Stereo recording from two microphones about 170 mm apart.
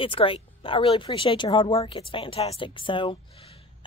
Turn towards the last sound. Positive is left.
turn(degrees=30)  # may be behind; listen again after turning